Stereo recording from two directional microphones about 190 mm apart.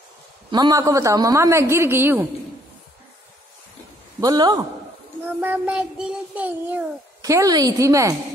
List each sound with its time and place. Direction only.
0.5 s a woman's voice: 20° right (ahead or behind)
4.2 s a man's voice: 20° right (ahead or behind)
5.4 s a woman's voice: 10° right (ahead or behind)